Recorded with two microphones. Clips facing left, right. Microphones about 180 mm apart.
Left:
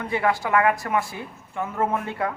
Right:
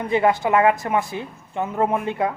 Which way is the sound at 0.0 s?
20° right (ahead or behind).